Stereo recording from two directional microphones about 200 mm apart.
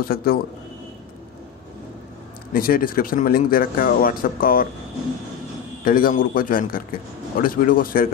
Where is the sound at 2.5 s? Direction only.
45° left (ahead or behind).